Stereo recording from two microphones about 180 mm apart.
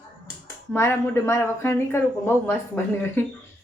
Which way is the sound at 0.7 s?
10° left (ahead or behind).